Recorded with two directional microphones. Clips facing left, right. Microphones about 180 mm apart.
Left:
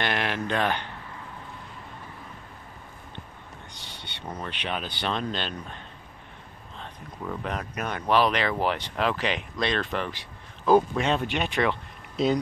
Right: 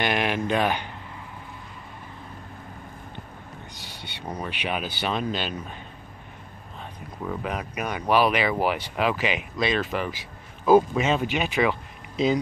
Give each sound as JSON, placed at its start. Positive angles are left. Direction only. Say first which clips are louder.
{"t": 0.0, "sound": "a sound", "louder": "right 3 dB", "side_deg": -15}
{"t": 0.5, "sound": "speech", "louder": "right 1 dB", "side_deg": -10}
{"t": 3.8, "sound": "speech", "louder": "right 2 dB", "side_deg": -10}
{"t": 6.8, "sound": "speech", "louder": "right 2 dB", "side_deg": -5}